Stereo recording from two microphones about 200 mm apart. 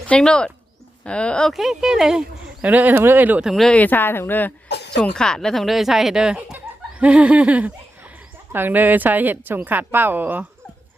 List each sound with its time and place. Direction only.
0.1 s speech: 5° left (ahead or behind)